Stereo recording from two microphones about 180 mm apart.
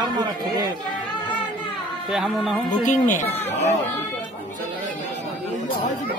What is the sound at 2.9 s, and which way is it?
Speech, 45° left (ahead or behind).